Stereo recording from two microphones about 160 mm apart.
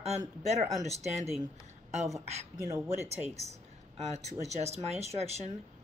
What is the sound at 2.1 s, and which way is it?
Speech, 20° right (ahead or behind).